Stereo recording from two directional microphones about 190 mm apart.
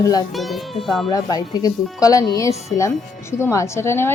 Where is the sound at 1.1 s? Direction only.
20° left (ahead or behind).